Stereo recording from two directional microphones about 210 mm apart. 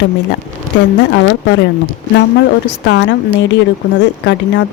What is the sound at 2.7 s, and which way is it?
Speech, 60° left (ahead or behind).